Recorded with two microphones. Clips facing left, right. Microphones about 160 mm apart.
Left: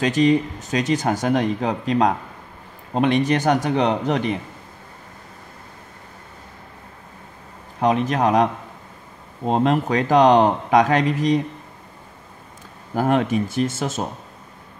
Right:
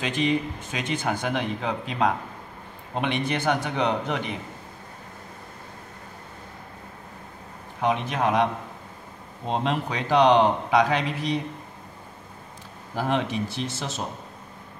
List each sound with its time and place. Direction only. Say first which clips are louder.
0.0 s speech: left 7 dB; 40° left (ahead or behind)
7.8 s speech: left 5 dB; 40° left (ahead or behind)
9.5 s a man's voice: left 7 dB; 45° left (ahead or behind)
12.9 s a man's voice: left 7 dB; 50° left (ahead or behind)